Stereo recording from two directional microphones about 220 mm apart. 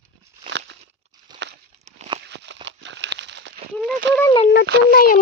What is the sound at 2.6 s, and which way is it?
Crumpling, 55° right (ahead or behind).